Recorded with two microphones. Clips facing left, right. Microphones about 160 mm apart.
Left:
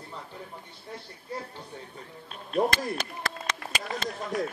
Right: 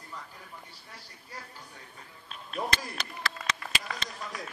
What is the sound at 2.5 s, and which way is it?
Speech, 45° left (ahead or behind).